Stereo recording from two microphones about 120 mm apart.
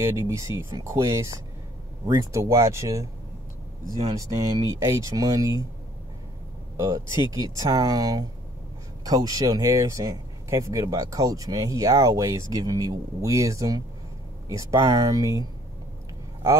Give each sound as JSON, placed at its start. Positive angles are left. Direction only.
{"t": 0.0, "sound": "speech", "side_deg": -20}
{"t": 4.1, "sound": "speech", "side_deg": -30}
{"t": 6.8, "sound": "speech", "side_deg": -25}